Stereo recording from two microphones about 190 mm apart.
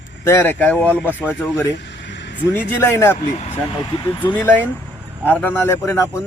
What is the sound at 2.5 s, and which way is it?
Speech, 10° left (ahead or behind).